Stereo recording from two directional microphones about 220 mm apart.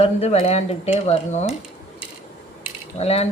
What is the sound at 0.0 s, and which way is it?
Speech, 30° left (ahead or behind).